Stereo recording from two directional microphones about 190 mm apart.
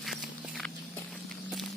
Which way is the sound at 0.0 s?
Centre (ahead or behind).